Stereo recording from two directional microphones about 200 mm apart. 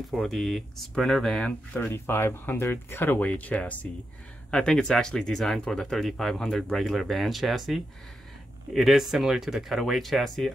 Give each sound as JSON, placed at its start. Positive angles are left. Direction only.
{"t": 0.1, "sound": "speech", "side_deg": 0}